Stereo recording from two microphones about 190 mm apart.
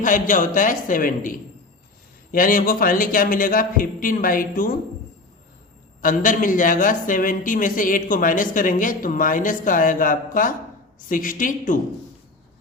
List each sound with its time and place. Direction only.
0.0 s speech: 45° left (ahead or behind)
6.0 s speech: 45° left (ahead or behind)